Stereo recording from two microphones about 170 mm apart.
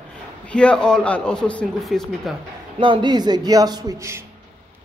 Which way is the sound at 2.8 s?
30° right (ahead or behind).